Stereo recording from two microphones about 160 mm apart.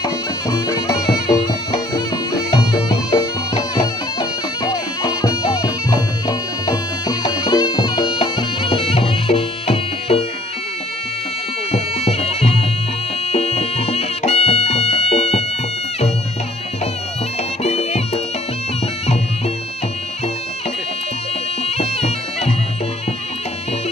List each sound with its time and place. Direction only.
0.0 s music: 25° left (ahead or behind)
11.7 s bagpipes: 40° left (ahead or behind)
13.3 s music: 40° left (ahead or behind)
17.6 s music: 40° left (ahead or behind)
21.6 s bagpipes: 40° left (ahead or behind)